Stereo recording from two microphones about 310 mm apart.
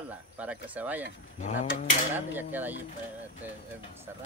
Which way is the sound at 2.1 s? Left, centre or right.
Centre.